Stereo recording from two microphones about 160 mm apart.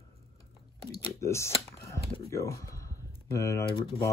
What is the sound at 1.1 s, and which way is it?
Speech, 20° left (ahead or behind).